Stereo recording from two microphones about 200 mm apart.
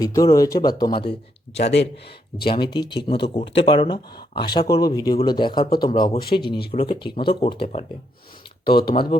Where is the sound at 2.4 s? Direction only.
25° left (ahead or behind).